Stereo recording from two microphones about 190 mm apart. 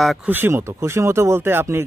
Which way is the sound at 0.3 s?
10° right (ahead or behind).